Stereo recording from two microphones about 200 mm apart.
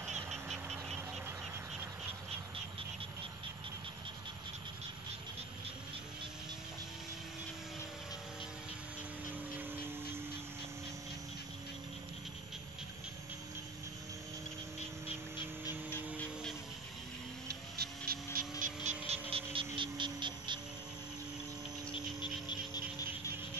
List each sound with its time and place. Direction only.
0.0 s a sound: centre (ahead or behind)
17.5 s vehicle: 50° right (ahead or behind)
18.6 s vehicle: 35° right (ahead or behind)
19.3 s music: 25° right (ahead or behind)
22.2 s frog: 20° left (ahead or behind)